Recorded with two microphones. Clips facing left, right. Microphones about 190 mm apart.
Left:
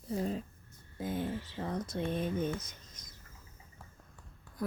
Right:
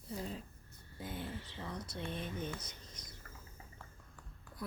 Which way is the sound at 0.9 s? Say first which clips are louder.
Left 8 dB; 45° left (ahead or behind).